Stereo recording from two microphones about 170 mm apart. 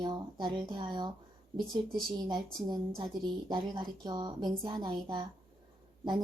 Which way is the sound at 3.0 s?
30° right (ahead or behind).